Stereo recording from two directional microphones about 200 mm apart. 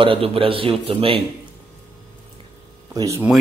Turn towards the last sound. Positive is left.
turn(degrees=-15)  # may be behind; listen again after turning